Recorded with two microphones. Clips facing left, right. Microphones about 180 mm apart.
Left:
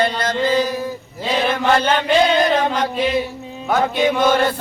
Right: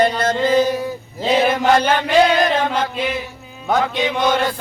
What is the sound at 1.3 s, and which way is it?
Mantra, 20° right (ahead or behind).